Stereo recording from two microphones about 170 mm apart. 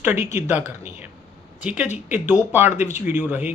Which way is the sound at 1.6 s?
10° right (ahead or behind).